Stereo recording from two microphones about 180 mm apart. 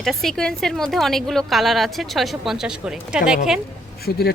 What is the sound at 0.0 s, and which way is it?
A woman's voice, centre (ahead or behind).